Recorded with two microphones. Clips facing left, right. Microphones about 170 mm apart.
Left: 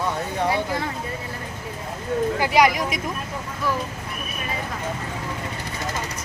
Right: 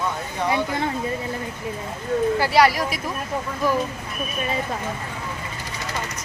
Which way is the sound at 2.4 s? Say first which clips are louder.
Left 1 dB; 15° left (ahead or behind).